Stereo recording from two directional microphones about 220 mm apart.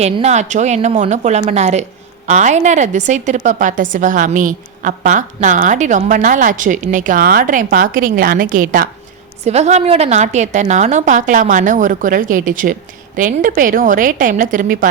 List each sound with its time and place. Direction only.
0.0 s a woman's voice: 30° right (ahead or behind)